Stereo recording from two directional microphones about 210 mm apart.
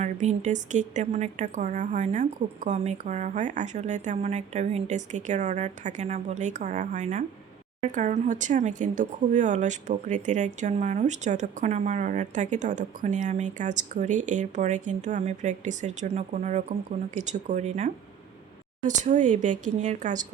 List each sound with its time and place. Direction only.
0.0 s speech: 35° right (ahead or behind)